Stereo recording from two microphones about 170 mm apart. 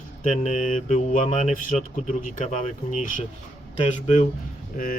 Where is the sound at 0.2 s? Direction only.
45° left (ahead or behind).